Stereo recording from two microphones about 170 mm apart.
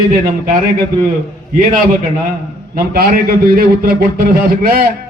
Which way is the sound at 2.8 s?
60° right (ahead or behind).